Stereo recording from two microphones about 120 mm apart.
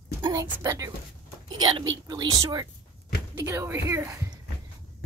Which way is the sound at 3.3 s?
20° right (ahead or behind).